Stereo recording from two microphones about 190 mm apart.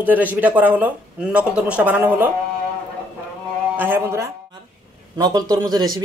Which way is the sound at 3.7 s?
10° right (ahead or behind).